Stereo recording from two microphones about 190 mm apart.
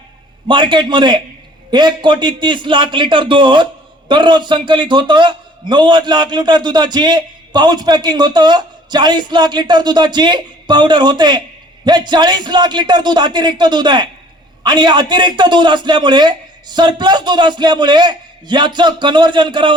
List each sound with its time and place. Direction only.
0.4 s a man's voice: 25° right (ahead or behind)